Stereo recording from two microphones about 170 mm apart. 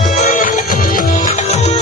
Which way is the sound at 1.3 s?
40° left (ahead or behind).